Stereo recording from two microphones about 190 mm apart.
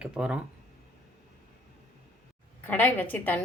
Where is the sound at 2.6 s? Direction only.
10° left (ahead or behind).